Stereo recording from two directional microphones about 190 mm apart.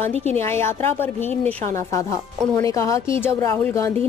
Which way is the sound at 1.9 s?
15° left (ahead or behind).